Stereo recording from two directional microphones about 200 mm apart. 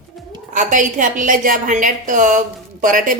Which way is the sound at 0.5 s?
40° right (ahead or behind).